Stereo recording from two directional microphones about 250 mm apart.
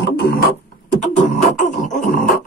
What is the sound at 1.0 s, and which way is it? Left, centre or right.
Music, left.